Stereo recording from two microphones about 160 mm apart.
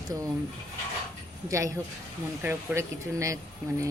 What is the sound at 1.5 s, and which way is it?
Speech, 20° right (ahead or behind).